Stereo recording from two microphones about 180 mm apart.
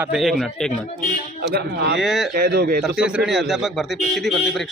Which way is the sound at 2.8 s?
5° right (ahead or behind).